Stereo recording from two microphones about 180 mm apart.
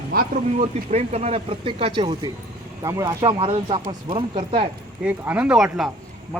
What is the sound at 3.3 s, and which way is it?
Speech, 30° right (ahead or behind).